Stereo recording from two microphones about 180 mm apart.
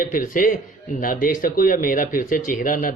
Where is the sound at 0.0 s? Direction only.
50° left (ahead or behind).